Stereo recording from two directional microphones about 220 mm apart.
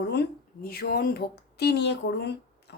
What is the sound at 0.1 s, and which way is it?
A woman's voice, 45° left (ahead or behind).